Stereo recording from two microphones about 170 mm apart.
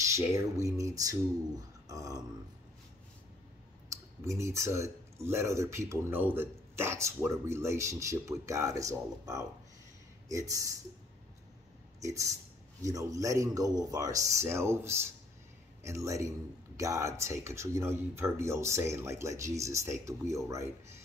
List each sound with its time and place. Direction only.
0.0 s speech: 15° right (ahead or behind)
1.9 s grunt: 20° right (ahead or behind)
4.3 s speech: 15° right (ahead or behind)
12.0 s speech: 20° right (ahead or behind)